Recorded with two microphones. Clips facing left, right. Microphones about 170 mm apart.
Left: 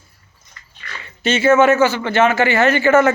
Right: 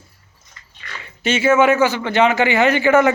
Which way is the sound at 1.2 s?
10° right (ahead or behind).